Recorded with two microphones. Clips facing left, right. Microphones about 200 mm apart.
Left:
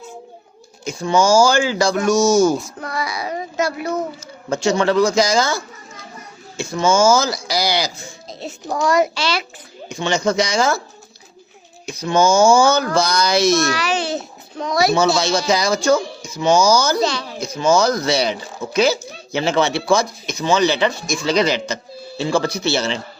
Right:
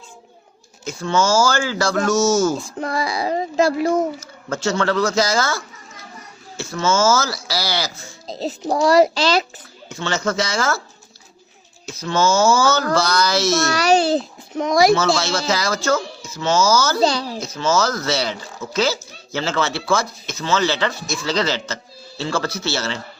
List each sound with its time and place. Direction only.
0.9 s speech: 15° left (ahead or behind)
2.6 s a child's voice: 30° right (ahead or behind)
4.4 s speech: 15° left (ahead or behind)
8.3 s music: 35° right (ahead or behind)
8.7 s a child's voice: 30° right (ahead or behind)
9.9 s speech: 15° left (ahead or behind)
11.9 s speech: 15° left (ahead or behind)
13.7 s a child's voice: 40° right (ahead or behind)
14.5 s a child's voice: 20° right (ahead or behind)
14.9 s speech: 15° left (ahead or behind)
17.0 s a child's voice: 30° right (ahead or behind)
17.4 s speech: 15° left (ahead or behind)